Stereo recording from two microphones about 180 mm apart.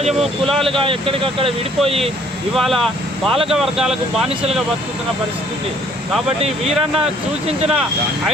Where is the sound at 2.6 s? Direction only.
Centre (ahead or behind).